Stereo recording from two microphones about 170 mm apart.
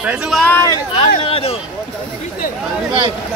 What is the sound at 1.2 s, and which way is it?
Speech, 35° left (ahead or behind).